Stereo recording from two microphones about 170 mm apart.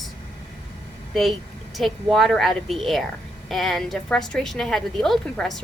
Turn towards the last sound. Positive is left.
turn(degrees=0)  # may be behind; listen again after turning